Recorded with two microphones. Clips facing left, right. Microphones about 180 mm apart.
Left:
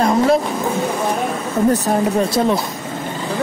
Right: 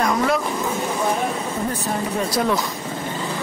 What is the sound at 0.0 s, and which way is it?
Vehicle, 30° left (ahead or behind).